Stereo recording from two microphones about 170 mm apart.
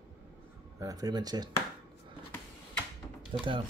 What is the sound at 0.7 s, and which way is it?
Speech, 20° right (ahead or behind).